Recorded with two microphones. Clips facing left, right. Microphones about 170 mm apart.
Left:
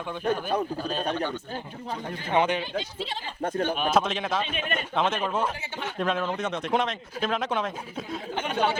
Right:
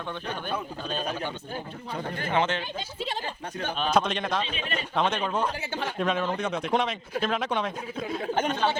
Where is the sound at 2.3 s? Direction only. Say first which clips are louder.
Left 3 dB; 15° left (ahead or behind).